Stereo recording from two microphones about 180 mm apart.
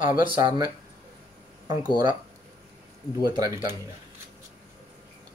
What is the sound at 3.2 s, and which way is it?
Speech, 20° right (ahead or behind).